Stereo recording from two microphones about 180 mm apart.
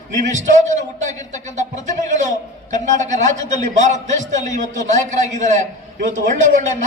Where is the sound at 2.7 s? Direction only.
40° right (ahead or behind).